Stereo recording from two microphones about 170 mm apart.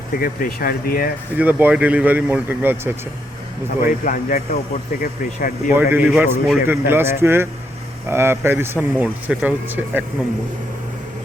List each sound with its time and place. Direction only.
0.2 s speech: 55° left (ahead or behind)
1.4 s speech: 10° right (ahead or behind)
3.8 s a man's voice: 55° left (ahead or behind)
5.7 s speech: 10° right (ahead or behind)